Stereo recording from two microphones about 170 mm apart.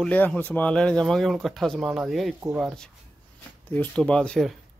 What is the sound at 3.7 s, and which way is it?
Speech, 10° left (ahead or behind).